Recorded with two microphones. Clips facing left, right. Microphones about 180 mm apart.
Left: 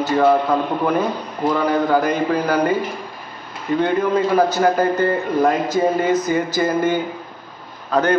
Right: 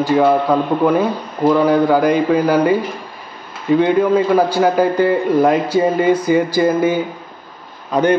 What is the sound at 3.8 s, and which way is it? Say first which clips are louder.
A man's voice: right 3 dB; 5° right (ahead or behind).